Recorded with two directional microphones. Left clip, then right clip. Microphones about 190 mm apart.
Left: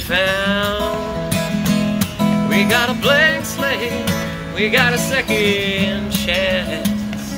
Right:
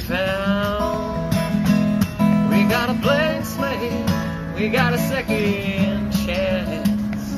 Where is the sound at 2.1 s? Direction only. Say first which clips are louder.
Left 3 dB; 20° left (ahead or behind).